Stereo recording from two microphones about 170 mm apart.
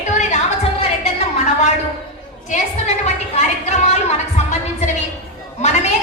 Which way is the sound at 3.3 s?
40° left (ahead or behind).